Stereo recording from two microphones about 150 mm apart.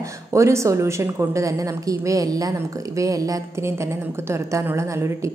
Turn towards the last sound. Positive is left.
turn(degrees=-20)  # may be behind; listen again after turning